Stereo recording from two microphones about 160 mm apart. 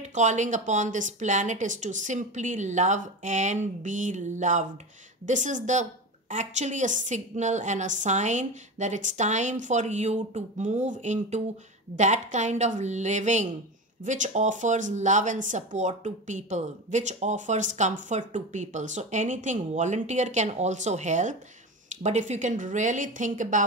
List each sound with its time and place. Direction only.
0.0 s speech: 50° right (ahead or behind)